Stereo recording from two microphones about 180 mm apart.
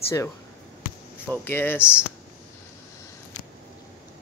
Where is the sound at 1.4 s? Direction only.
10° left (ahead or behind).